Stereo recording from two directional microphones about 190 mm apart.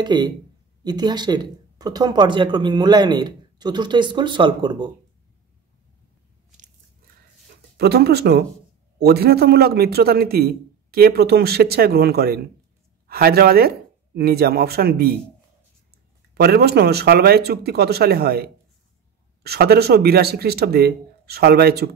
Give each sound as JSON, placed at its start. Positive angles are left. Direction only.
{"t": 0.0, "sound": "speech", "side_deg": -25}
{"t": 7.7, "sound": "a man's voice", "side_deg": -55}
{"t": 16.3, "sound": "a man's voice", "side_deg": -55}